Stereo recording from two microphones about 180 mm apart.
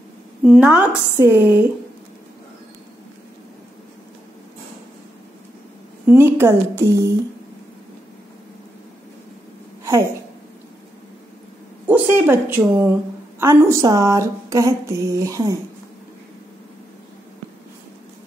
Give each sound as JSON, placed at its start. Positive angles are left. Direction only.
{"t": 0.4, "sound": "speech", "side_deg": -5}
{"t": 6.0, "sound": "speech", "side_deg": -10}
{"t": 11.9, "sound": "speech", "side_deg": -10}